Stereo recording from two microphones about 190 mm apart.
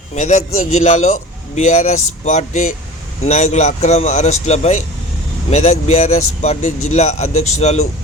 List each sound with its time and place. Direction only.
0.1 s speech: 40° left (ahead or behind)